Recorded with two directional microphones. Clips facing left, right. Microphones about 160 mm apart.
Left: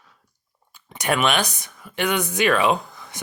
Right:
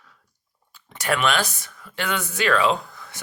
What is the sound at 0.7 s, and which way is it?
Speech, 15° left (ahead or behind).